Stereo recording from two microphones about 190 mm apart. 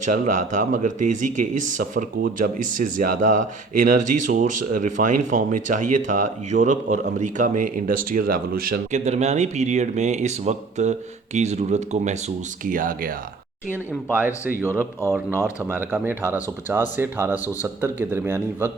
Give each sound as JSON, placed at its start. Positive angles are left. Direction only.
{"t": 0.0, "sound": "speech", "side_deg": -45}
{"t": 9.0, "sound": "speech", "side_deg": -35}
{"t": 14.2, "sound": "speech", "side_deg": -10}